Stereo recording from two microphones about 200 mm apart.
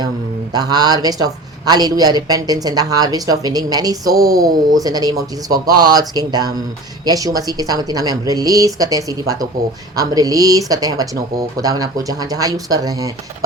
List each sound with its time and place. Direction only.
0.5 s a woman's voice: 20° right (ahead or behind)